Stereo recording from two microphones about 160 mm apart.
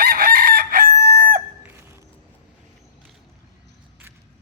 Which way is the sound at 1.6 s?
15° right (ahead or behind).